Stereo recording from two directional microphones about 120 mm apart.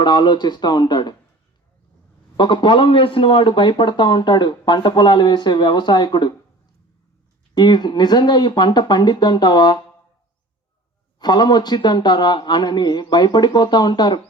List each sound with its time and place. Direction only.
0.0 s speech: 40° left (ahead or behind)
2.3 s speech: 40° left (ahead or behind)
7.5 s speech: 35° left (ahead or behind)
11.2 s speech: 35° left (ahead or behind)